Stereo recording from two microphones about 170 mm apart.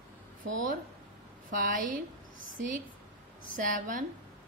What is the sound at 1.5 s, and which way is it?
Speech, 55° right (ahead or behind).